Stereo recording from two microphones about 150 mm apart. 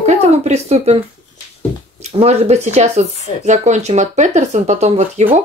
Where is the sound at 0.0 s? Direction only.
45° right (ahead or behind).